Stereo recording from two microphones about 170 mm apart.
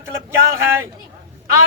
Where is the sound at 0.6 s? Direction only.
15° right (ahead or behind).